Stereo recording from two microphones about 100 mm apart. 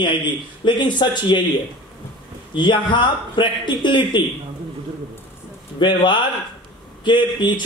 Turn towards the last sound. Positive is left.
turn(degrees=50)  # may be behind; listen again after turning